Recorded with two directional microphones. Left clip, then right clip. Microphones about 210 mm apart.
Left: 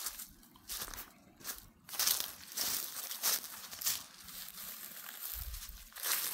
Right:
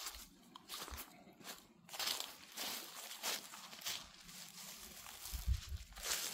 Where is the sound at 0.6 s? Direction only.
50° left (ahead or behind).